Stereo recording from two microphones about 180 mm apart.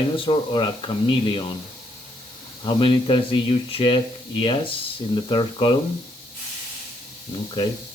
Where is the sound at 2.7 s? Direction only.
30° left (ahead or behind).